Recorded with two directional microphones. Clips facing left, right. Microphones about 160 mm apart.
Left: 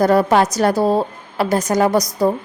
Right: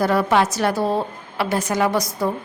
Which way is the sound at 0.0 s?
45° left (ahead or behind).